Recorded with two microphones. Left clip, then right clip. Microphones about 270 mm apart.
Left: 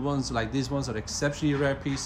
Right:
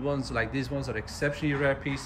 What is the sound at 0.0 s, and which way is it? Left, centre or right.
Speech, centre.